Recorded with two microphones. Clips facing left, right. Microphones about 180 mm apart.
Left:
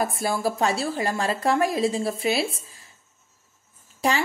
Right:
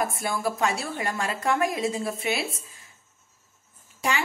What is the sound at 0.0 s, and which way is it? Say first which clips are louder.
A woman's voice: left 3 dB; 30° left (ahead or behind).